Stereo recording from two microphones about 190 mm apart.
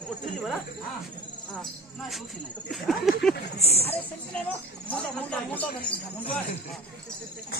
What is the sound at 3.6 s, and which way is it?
Speech, 35° left (ahead or behind).